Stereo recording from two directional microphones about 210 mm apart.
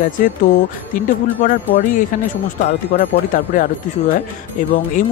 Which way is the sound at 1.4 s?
40° left (ahead or behind).